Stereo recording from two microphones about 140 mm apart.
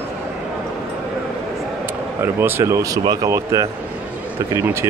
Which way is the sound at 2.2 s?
15° right (ahead or behind).